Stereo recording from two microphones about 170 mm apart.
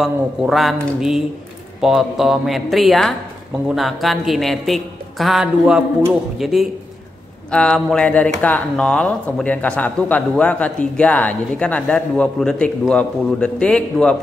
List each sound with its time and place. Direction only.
0.0 s a woman's voice: centre (ahead or behind)